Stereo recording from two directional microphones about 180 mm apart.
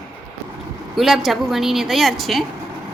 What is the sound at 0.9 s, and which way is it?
A woman's voice, centre (ahead or behind).